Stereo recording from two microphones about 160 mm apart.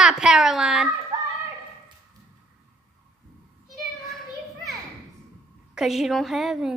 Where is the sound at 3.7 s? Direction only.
Centre (ahead or behind).